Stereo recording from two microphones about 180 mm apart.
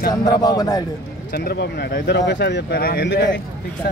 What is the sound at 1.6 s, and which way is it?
Speech, 70° left (ahead or behind).